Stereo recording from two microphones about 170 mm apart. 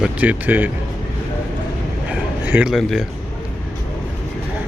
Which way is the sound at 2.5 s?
5° right (ahead or behind).